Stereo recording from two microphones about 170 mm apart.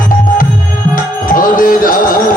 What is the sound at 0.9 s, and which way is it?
Music, 55° left (ahead or behind).